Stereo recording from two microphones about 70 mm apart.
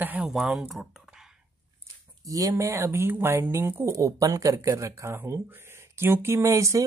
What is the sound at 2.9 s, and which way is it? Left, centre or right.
Speech, right.